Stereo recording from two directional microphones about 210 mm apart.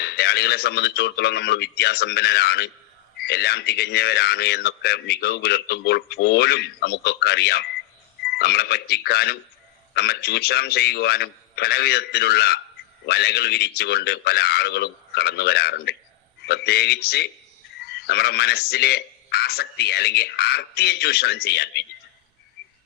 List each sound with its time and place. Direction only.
0.0 s speech: 50° left (ahead or behind)